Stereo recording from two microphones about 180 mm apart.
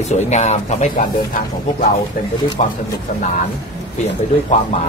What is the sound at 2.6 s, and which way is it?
Speech, 40° left (ahead or behind).